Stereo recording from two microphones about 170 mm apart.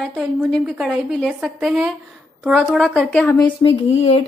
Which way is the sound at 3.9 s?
40° left (ahead or behind).